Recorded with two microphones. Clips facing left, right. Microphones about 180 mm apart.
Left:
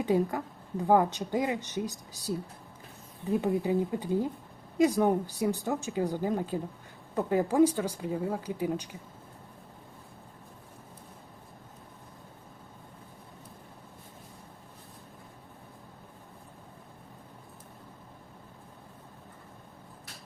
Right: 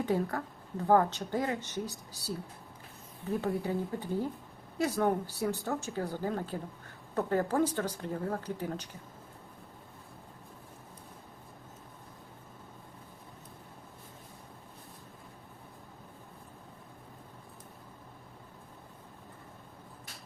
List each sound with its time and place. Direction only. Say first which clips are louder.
0.0 s speech: left 4 dB; 15° left (ahead or behind)
3.4 s speech: left 5 dB; 15° left (ahead or behind)